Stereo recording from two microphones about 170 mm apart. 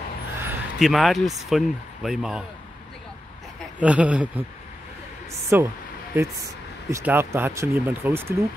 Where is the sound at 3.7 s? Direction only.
10° right (ahead or behind).